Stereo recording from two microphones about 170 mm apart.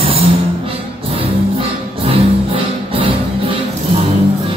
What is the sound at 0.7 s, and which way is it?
Music, 35° right (ahead or behind).